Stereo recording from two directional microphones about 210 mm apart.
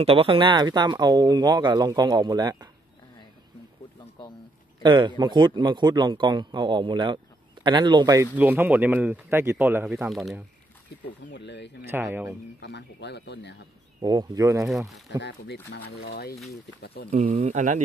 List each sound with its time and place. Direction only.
0.0 s speech: 25° right (ahead or behind)
4.8 s speech: 20° right (ahead or behind); by 10.4 s centre (ahead or behind)
11.2 s speech: 55° left (ahead or behind)
11.9 s speech: 10° right (ahead or behind)
12.6 s speech: 55° left (ahead or behind)
14.0 s speech: 15° right (ahead or behind)
15.2 s speech: 50° left (ahead or behind)
17.1 s speech: 35° right (ahead or behind)